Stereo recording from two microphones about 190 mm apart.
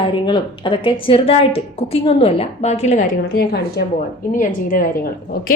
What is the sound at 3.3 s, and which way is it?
Speech, 55° left (ahead or behind).